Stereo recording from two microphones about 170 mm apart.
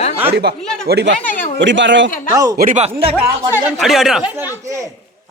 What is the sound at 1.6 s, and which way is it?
Speech, 90° right.